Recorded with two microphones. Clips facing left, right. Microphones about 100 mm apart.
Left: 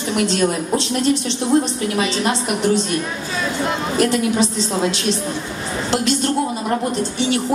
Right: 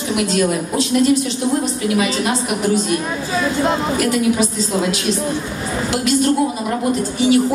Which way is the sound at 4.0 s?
30° left (ahead or behind).